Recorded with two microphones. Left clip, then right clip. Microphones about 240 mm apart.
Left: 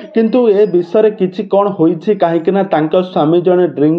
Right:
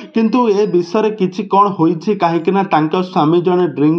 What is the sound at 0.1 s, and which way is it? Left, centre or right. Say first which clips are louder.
Speech: left 3 dB; right.